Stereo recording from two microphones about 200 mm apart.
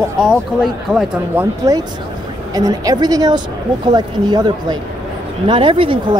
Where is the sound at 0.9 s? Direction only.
10° right (ahead or behind).